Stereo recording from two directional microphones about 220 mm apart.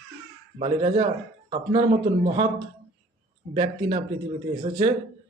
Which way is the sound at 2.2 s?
20° right (ahead or behind).